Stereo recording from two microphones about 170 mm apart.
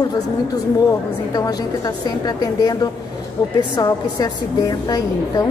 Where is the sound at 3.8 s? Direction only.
25° left (ahead or behind).